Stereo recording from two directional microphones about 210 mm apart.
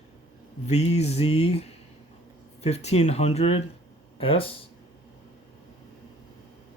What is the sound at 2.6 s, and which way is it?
Speech, 30° left (ahead or behind).